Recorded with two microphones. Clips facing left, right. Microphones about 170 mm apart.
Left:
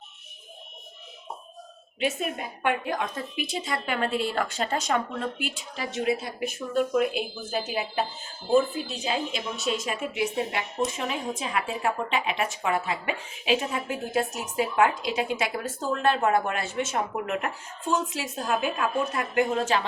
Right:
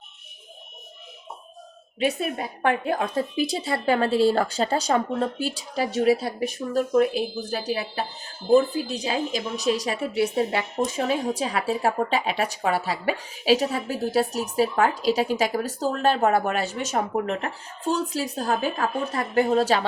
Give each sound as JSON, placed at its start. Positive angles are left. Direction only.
{"t": 2.0, "sound": "a woman's voice", "side_deg": -35}